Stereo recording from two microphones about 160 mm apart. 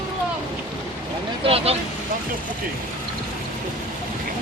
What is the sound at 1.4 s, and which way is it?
Vehicle, 35° right (ahead or behind).